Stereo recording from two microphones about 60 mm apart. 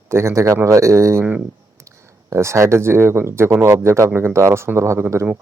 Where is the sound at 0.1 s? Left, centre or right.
Right.